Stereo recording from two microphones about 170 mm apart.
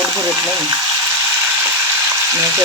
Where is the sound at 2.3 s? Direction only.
15° right (ahead or behind).